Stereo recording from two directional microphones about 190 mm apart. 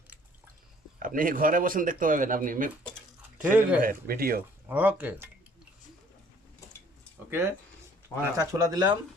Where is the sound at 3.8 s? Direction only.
50° right (ahead or behind).